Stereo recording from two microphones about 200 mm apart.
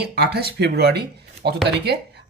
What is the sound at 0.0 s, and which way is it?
Speech, 55° right (ahead or behind).